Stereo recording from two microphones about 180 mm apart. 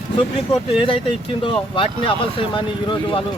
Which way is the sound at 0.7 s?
30° left (ahead or behind).